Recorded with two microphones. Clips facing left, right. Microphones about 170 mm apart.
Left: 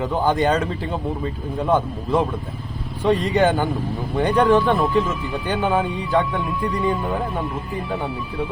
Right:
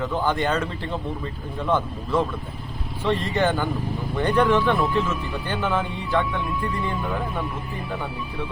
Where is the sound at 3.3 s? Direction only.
15° left (ahead or behind).